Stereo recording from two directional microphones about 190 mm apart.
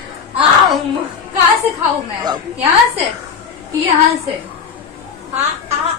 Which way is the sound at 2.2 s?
25° right (ahead or behind).